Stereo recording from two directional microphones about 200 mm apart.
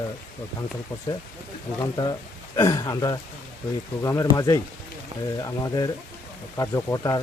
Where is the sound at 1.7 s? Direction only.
20° left (ahead or behind).